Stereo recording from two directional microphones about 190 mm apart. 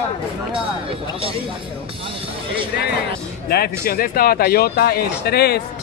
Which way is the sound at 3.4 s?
55° left (ahead or behind).